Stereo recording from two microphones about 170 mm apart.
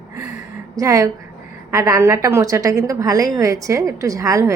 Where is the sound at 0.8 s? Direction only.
20° right (ahead or behind).